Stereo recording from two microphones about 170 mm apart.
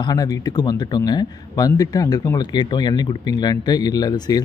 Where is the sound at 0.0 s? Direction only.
20° left (ahead or behind).